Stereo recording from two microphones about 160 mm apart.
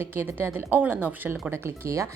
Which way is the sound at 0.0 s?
15° right (ahead or behind).